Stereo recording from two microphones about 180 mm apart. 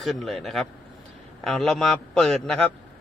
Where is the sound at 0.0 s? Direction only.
Centre (ahead or behind).